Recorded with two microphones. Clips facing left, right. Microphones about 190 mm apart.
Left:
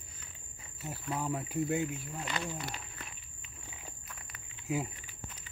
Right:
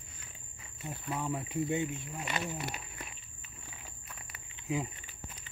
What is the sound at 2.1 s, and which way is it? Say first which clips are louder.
Speech: right 1 dB; 15° right (ahead or behind).